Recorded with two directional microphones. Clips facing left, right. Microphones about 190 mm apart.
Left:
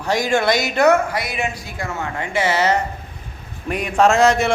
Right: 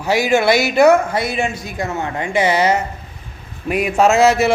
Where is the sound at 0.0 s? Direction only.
5° right (ahead or behind).